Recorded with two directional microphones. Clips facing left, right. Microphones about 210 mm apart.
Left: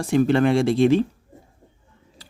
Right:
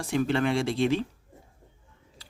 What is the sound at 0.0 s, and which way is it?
Speech, 45° left (ahead or behind).